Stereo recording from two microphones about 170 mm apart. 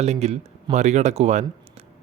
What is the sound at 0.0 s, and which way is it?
Speech, 40° right (ahead or behind).